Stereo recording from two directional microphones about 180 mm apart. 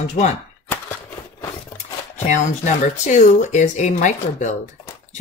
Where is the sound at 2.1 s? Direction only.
40° left (ahead or behind).